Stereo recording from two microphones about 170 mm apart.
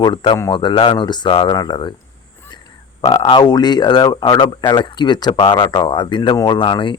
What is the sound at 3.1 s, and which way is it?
Speech, 30° left (ahead or behind).